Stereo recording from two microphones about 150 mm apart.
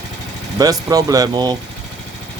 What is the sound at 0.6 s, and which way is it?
Speech, 25° right (ahead or behind).